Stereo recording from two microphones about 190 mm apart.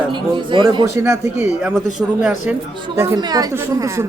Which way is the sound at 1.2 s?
35° left (ahead or behind).